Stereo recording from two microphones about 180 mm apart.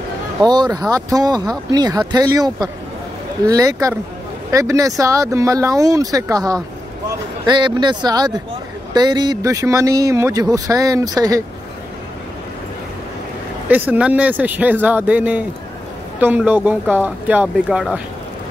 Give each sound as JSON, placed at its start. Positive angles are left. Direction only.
{"t": 0.4, "sound": "speech", "side_deg": -20}
{"t": 13.7, "sound": "speech", "side_deg": -10}